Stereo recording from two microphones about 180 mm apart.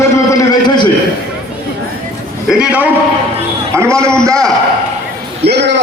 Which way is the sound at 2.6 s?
10° right (ahead or behind).